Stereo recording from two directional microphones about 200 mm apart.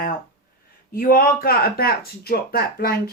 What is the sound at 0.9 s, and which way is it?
Speech, 45° left (ahead or behind).